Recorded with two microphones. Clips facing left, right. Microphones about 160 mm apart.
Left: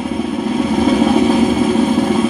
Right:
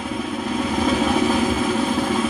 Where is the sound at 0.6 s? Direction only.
20° left (ahead or behind).